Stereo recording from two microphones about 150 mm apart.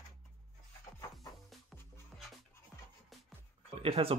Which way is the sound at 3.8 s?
40° right (ahead or behind).